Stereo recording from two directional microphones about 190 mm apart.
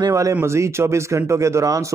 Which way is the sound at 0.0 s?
15° right (ahead or behind).